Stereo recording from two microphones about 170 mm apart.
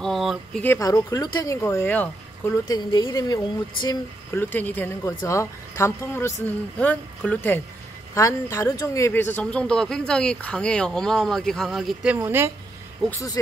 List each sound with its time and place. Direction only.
0.0 s speech: centre (ahead or behind)
0.7 s speech: 20° left (ahead or behind)
2.7 s speech: 25° left (ahead or behind); by 12.5 s 15° right (ahead or behind)